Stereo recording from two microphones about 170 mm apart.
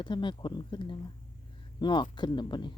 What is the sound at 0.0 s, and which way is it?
Speech, 30° left (ahead or behind).